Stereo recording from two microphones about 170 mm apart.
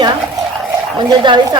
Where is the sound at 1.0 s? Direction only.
25° right (ahead or behind).